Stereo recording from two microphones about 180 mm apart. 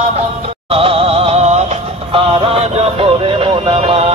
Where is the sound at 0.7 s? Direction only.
30° right (ahead or behind).